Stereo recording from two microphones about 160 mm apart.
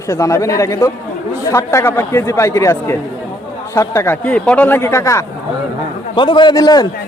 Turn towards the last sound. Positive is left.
turn(degrees=25)  # may be behind; listen again after turning